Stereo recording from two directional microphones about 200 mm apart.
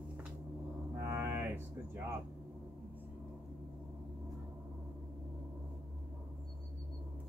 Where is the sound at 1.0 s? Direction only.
15° right (ahead or behind).